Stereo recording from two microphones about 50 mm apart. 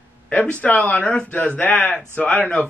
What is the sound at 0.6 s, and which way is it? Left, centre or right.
Speech, left.